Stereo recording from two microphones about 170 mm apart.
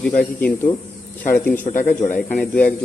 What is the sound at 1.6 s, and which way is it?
Speech, 50° left (ahead or behind).